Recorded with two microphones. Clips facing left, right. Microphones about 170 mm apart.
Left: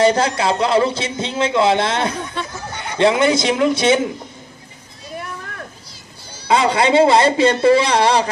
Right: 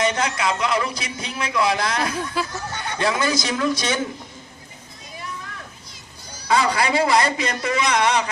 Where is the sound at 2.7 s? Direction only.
20° left (ahead or behind).